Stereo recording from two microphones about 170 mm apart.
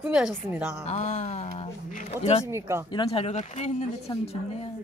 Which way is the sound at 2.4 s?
15° right (ahead or behind).